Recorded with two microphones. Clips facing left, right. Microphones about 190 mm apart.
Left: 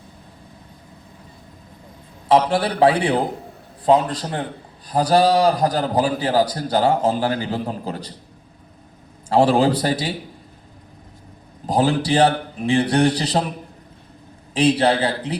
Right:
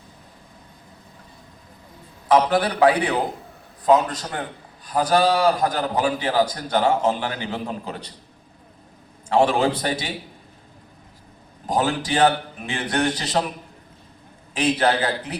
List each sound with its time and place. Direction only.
2.3 s a man's voice: 30° left (ahead or behind)
9.3 s a man's voice: 35° left (ahead or behind)
11.6 s a man's voice: 35° left (ahead or behind)
14.5 s a man's voice: 35° left (ahead or behind)